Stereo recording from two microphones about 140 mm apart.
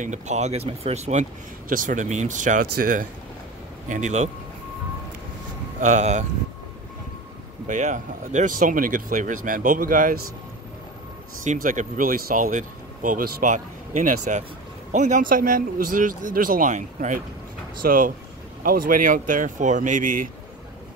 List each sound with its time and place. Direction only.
0.0 s speech: 55° right (ahead or behind)
1.7 s speech: 70° right (ahead or behind)
3.9 s speech: 55° right (ahead or behind)
5.8 s speech: 60° right (ahead or behind)
7.6 s speech: 60° right (ahead or behind); by 10.2 s 85° right
11.4 s speech: 70° right (ahead or behind)
17.8 s speech: 80° right